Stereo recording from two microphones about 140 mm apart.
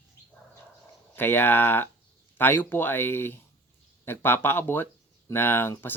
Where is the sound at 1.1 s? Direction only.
15° left (ahead or behind).